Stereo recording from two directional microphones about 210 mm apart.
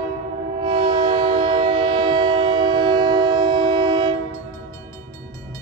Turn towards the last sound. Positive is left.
turn(degrees=-25)  # may be behind; listen again after turning